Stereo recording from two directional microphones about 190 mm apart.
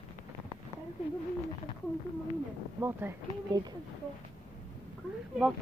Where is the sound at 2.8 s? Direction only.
10° right (ahead or behind).